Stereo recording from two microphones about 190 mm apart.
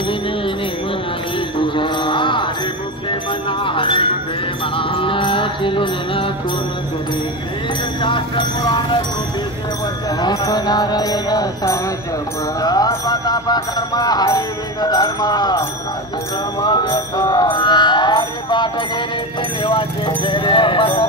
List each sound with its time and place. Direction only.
1.6 s mantra: 25° left (ahead or behind)
3.1 s jingle bell: 25° left (ahead or behind)
4.7 s music: 25° left (ahead or behind)
8.0 s a sound: 25° left (ahead or behind)
10.2 s music: 20° left (ahead or behind)
16.6 s music: 20° left (ahead or behind)
19.6 s speech: 25° left (ahead or behind)